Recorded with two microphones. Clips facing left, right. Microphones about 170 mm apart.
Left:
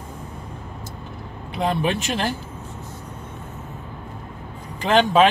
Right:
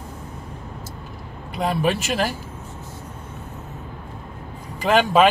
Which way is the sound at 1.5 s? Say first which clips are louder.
Right 1 dB; 5° right (ahead or behind).